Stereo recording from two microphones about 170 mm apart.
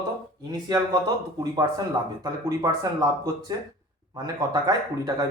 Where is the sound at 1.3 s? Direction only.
25° right (ahead or behind).